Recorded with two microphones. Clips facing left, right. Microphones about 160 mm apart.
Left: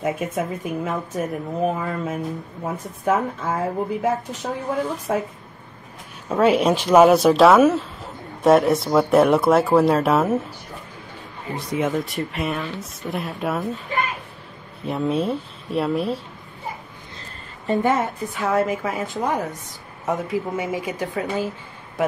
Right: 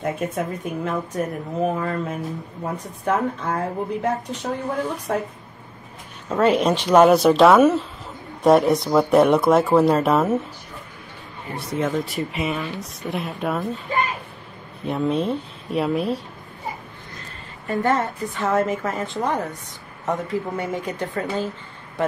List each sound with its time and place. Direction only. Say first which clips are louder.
0.0 s speech: left 1 dB; centre (ahead or behind)
11.8 s speech: even; centre (ahead or behind)
14.9 s speech: even; centre (ahead or behind)
17.6 s a woman's voice: left 1 dB; 15° left (ahead or behind)
18.0 s speech: even; 5° left (ahead or behind)